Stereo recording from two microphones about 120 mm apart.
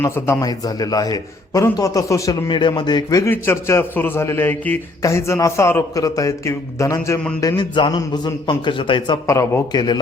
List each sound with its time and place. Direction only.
0.0 s a man's voice: 25° left (ahead or behind)
2.5 s a man's voice: 40° left (ahead or behind)
3.2 s a man's voice: 20° left (ahead or behind)
7.4 s a man's voice: 40° left (ahead or behind)
9.2 s a man's voice: 25° left (ahead or behind)